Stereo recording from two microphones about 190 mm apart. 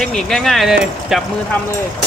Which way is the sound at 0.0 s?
Centre (ahead or behind).